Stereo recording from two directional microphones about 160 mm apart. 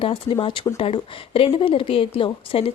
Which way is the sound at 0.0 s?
35° left (ahead or behind).